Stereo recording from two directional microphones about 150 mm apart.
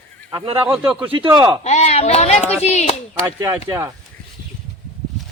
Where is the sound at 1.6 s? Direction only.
50° left (ahead or behind).